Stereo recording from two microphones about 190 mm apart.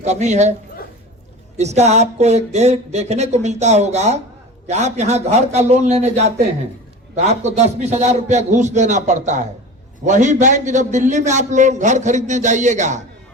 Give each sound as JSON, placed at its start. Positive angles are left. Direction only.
{"t": 0.0, "sound": "a man's voice", "side_deg": -35}
{"t": 1.5, "sound": "a man's voice", "side_deg": -35}